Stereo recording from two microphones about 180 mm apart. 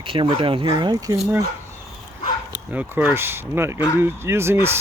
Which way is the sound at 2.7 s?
10° right (ahead or behind).